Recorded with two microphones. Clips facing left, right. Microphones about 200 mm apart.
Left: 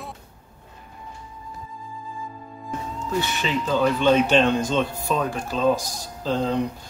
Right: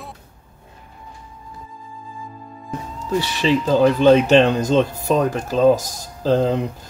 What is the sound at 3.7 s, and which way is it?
Speech, 40° right (ahead or behind).